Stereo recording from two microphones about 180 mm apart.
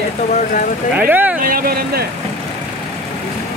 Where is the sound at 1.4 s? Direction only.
55° right (ahead or behind).